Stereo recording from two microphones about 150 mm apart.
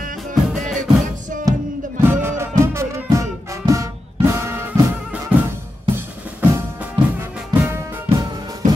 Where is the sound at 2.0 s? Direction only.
15° right (ahead or behind).